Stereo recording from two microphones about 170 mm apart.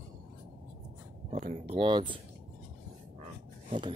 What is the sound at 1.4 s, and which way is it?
Speech, 45° right (ahead or behind).